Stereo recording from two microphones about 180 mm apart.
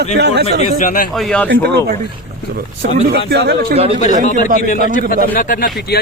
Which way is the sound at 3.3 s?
65° right (ahead or behind).